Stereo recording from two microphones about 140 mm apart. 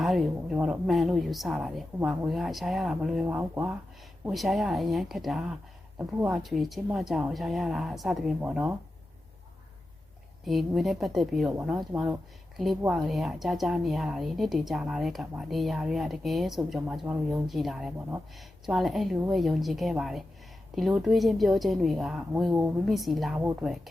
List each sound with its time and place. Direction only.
0.0 s a woman's voice: centre (ahead or behind)
4.3 s a woman's voice: centre (ahead or behind)
10.4 s a woman's voice: centre (ahead or behind)
11.9 s speech: 15° right (ahead or behind)
12.9 s a woman's voice: centre (ahead or behind)
23.4 s speech: 15° right (ahead or behind)
23.6 s a woman's voice: centre (ahead or behind)